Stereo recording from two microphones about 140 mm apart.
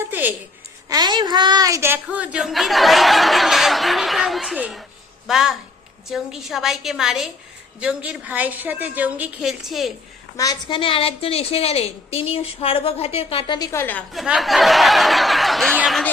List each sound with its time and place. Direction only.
0.0 s a sound: 15° right (ahead or behind)
0.9 s a woman's voice: 30° right (ahead or behind); by 9.9 s centre (ahead or behind)
10.3 s a woman's voice: 25° left (ahead or behind); by 13.6 s 40° left (ahead or behind)
13.6 s a woman's voice: 20° left (ahead or behind)
14.1 s a woman's voice: centre (ahead or behind)